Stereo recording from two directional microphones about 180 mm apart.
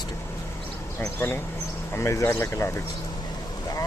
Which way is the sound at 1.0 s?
15° left (ahead or behind).